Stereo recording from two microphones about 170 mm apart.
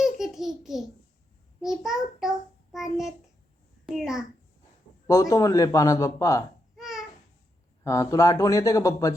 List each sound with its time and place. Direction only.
0.0 s babbling: centre (ahead or behind)
1.6 s a child's voice: centre (ahead or behind)
5.0 s a man's voice: 20° left (ahead or behind)
6.7 s babbling: centre (ahead or behind)
7.9 s a man's voice: 20° left (ahead or behind)